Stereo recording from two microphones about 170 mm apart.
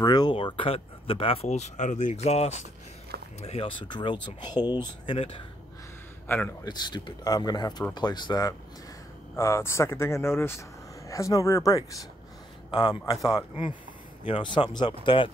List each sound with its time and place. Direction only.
0.0 s speech: 25° left (ahead or behind)
6.2 s speech: 15° left (ahead or behind)
6.7 s speech: 25° left (ahead or behind)